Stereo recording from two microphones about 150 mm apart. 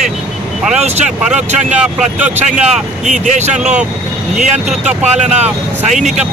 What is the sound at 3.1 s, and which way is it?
Speech, 50° right (ahead or behind).